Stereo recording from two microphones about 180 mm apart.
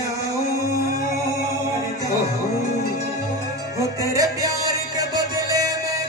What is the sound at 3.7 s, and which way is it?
Music, 20° right (ahead or behind).